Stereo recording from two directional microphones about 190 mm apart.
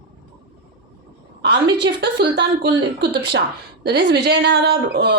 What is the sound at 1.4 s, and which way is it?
A woman's voice, 60° right (ahead or behind).